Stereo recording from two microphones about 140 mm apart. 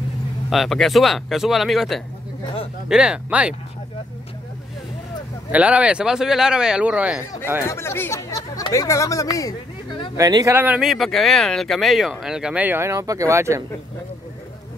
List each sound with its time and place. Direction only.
0.5 s speech: centre (ahead or behind)
5.5 s speech: 10° right (ahead or behind)
7.6 s speech: 20° left (ahead or behind)
10.1 s speech: 25° right (ahead or behind)
10.5 s speech: 10° right (ahead or behind)